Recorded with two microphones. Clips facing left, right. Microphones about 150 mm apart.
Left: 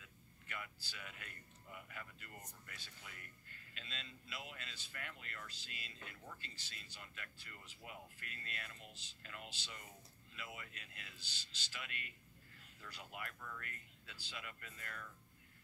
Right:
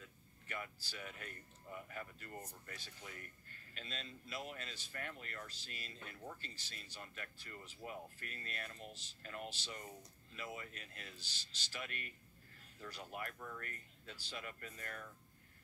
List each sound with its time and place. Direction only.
0.0 s speech: 45° right (ahead or behind)